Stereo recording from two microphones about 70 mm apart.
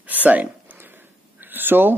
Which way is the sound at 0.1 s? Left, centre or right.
Right.